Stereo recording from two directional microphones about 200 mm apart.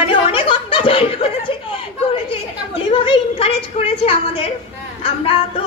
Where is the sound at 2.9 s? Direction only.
25° left (ahead or behind).